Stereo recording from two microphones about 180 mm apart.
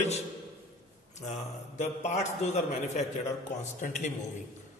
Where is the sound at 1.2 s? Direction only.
40° left (ahead or behind).